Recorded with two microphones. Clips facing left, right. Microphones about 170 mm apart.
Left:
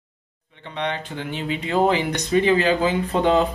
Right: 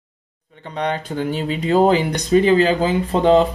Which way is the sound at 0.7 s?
40° right (ahead or behind).